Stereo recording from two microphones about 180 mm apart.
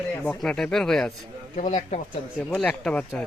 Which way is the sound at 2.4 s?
5° left (ahead or behind).